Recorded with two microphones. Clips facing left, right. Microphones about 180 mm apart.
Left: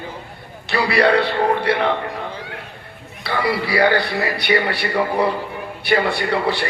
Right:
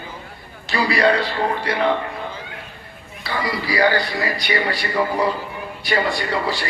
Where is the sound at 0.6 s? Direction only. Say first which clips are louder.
Left 1 dB; 65° left (ahead or behind).